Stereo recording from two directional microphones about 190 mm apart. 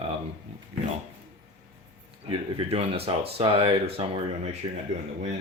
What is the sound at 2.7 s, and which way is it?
Speech, 30° right (ahead or behind).